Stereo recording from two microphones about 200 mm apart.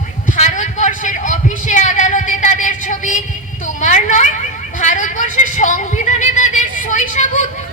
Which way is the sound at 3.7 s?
40° left (ahead or behind).